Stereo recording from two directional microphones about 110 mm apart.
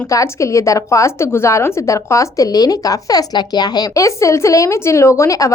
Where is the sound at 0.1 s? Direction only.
30° left (ahead or behind).